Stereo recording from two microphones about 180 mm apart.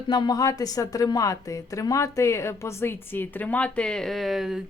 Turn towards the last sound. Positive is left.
turn(degrees=0)  # may be behind; listen again after turning